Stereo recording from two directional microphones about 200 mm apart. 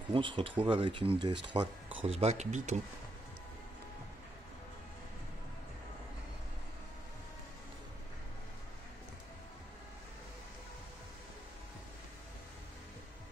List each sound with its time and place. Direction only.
0.1 s speech: 25° right (ahead or behind)